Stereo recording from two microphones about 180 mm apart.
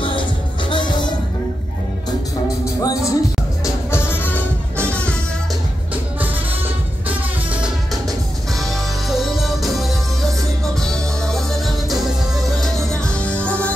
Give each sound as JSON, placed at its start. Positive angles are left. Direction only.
{"t": 0.7, "sound": "music", "side_deg": 25}
{"t": 2.8, "sound": "music", "side_deg": 20}
{"t": 8.5, "sound": "music", "side_deg": 0}